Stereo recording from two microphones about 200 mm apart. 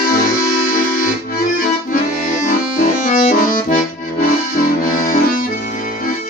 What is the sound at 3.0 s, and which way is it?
Accordion, 40° left (ahead or behind).